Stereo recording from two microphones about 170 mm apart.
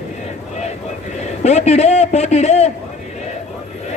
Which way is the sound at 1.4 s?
40° left (ahead or behind).